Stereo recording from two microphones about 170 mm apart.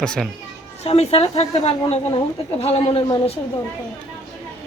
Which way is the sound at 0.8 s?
35° left (ahead or behind).